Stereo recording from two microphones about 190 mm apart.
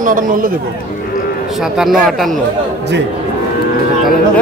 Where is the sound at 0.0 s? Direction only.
45° right (ahead or behind).